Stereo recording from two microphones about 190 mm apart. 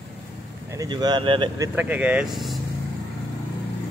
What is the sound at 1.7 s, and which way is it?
Speech, 10° right (ahead or behind).